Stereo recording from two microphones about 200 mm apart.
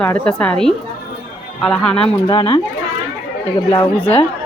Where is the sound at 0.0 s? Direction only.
5° left (ahead or behind).